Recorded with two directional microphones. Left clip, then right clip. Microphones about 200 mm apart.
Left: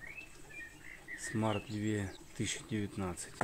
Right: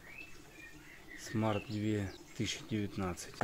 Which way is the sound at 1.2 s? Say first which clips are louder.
Even; 5° right (ahead or behind).